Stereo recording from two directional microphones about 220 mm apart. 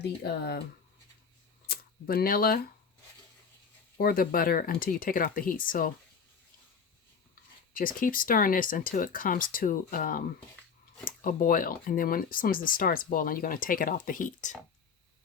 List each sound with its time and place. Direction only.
0.0 s speech: 45° left (ahead or behind)
1.6 s a sound: 45° left (ahead or behind)
3.9 s speech: 40° left (ahead or behind)
7.7 s speech: 40° left (ahead or behind)